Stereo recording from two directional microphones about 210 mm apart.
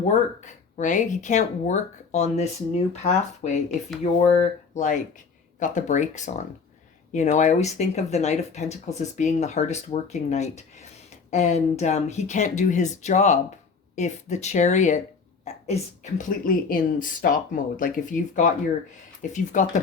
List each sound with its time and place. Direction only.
0.0 s speech: 35° left (ahead or behind)